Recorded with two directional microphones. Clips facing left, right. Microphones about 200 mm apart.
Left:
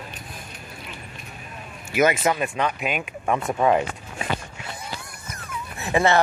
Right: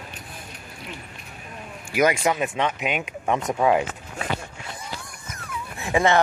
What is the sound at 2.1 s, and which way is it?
Speech, centre (ahead or behind).